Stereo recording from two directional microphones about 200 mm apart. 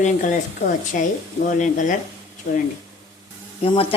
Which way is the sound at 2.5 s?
55° left (ahead or behind).